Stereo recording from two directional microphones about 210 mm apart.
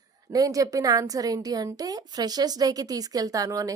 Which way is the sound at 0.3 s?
15° right (ahead or behind).